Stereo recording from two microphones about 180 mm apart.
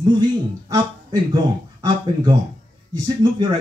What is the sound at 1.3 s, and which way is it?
A man's voice, 20° right (ahead or behind).